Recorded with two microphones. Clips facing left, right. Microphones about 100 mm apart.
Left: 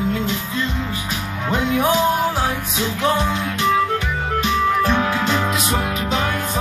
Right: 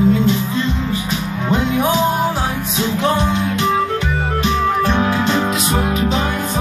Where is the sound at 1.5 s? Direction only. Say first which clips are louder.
Right 1 dB; 25° right (ahead or behind).